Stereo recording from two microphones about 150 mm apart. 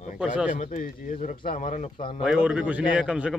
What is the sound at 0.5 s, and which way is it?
Speech, 60° left (ahead or behind).